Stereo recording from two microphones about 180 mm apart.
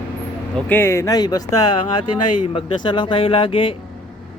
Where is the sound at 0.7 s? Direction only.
15° left (ahead or behind).